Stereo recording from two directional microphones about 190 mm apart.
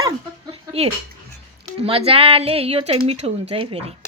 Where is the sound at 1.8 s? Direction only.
30° right (ahead or behind).